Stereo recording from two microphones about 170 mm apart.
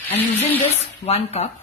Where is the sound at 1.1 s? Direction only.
40° left (ahead or behind).